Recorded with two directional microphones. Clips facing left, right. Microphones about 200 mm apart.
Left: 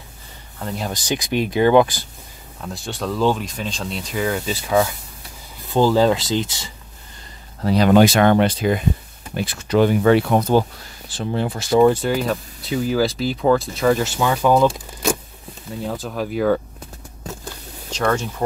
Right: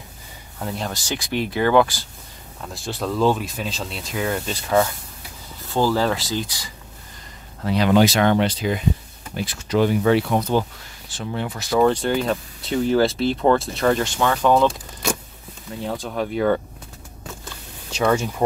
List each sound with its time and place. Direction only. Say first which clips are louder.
0.6 s speech: left 1 dB; 5° right (ahead or behind)
0.8 s speech: left 4 dB; 15° left (ahead or behind)
2.6 s speech: even; centre (ahead or behind)
5.7 s speech: left 4 dB; 20° left (ahead or behind)
7.6 s speech: left 3 dB; 40° left (ahead or behind)
11.1 s speech: left 4 dB; 35° left (ahead or behind)
11.7 s speech: left 3 dB; 10° left (ahead or behind)
15.9 s speech: right 1 dB; 5° left (ahead or behind)
17.9 s speech: right 1 dB; 10° right (ahead or behind)